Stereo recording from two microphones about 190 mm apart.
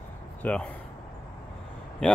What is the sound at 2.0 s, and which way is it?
Speech, 5° left (ahead or behind).